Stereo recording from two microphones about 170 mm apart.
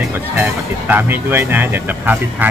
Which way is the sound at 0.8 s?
10° right (ahead or behind).